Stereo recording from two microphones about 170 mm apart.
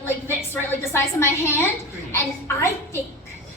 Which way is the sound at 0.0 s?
15° left (ahead or behind).